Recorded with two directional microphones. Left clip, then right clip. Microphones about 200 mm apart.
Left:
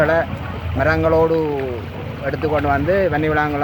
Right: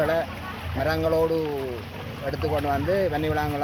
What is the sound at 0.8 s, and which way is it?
Speech, 5° left (ahead or behind).